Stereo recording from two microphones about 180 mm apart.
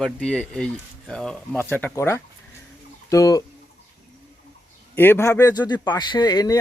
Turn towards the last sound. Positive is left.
turn(degrees=20)  # may be behind; listen again after turning